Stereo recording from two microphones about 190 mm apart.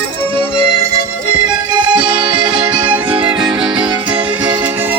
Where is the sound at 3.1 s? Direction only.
25° right (ahead or behind).